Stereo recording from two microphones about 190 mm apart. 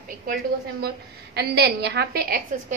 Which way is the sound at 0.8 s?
60° right (ahead or behind).